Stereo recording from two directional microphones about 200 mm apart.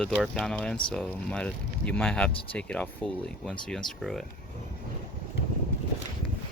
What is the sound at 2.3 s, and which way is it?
Speech, 25° left (ahead or behind).